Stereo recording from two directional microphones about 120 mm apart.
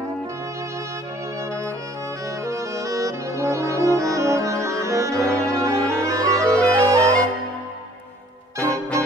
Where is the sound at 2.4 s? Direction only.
25° right (ahead or behind).